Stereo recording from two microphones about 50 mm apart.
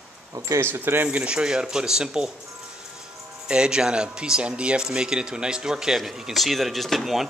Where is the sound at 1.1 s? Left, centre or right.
Centre.